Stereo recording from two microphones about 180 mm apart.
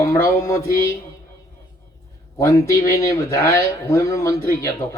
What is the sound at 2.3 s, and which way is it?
Speech, 20° left (ahead or behind).